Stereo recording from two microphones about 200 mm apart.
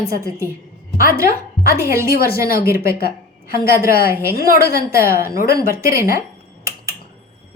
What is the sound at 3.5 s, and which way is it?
A woman's voice, 50° left (ahead or behind).